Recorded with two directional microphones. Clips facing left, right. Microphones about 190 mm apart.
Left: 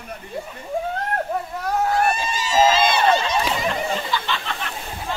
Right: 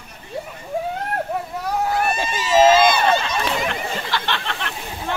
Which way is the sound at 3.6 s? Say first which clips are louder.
Left 2 dB; 70° right (ahead or behind).